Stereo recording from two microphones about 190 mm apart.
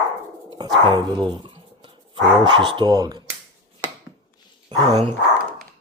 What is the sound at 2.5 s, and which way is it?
Speech, 25° right (ahead or behind).